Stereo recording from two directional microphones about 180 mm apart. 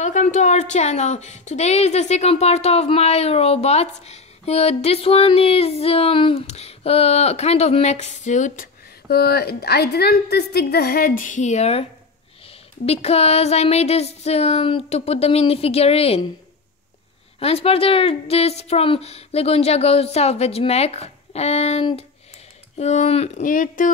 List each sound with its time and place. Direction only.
0.0 s a woman's voice: 40° left (ahead or behind)
9.1 s a woman's voice: 60° left (ahead or behind); by 16.3 s 35° left (ahead or behind)
17.4 s a woman's voice: 35° left (ahead or behind)